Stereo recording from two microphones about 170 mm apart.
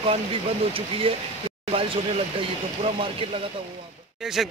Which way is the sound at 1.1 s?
35° right (ahead or behind).